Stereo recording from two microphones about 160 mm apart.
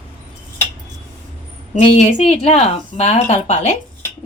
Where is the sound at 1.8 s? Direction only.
45° left (ahead or behind).